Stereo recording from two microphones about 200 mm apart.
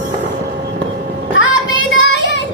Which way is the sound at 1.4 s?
70° left (ahead or behind).